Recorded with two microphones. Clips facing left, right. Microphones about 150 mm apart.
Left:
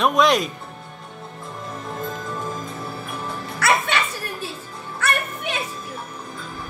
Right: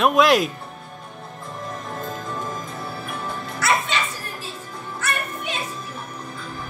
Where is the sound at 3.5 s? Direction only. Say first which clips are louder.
Left 2 dB; 65° left (ahead or behind).